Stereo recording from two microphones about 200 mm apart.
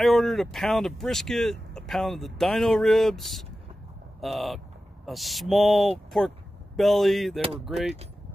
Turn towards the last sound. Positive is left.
turn(degrees=0)  # may be behind; listen again after turning